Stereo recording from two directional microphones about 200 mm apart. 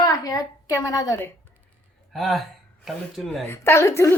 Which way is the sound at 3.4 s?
10° left (ahead or behind).